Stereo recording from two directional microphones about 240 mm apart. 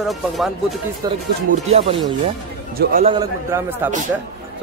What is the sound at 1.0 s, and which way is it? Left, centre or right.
Speech, centre.